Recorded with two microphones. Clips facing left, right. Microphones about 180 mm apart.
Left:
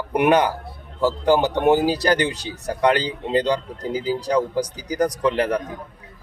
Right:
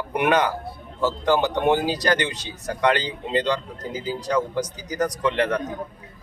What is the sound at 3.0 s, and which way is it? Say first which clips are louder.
Speech: left 3 dB; 35° left (ahead or behind).